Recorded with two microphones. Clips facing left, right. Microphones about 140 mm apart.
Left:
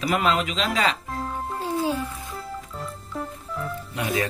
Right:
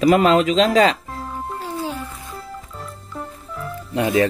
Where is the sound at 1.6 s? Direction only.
15° left (ahead or behind).